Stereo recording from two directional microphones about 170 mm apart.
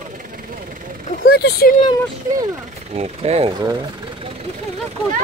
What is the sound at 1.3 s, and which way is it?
Speech, 70° left (ahead or behind).